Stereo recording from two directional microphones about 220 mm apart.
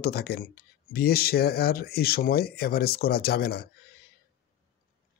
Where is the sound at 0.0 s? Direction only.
45° left (ahead or behind).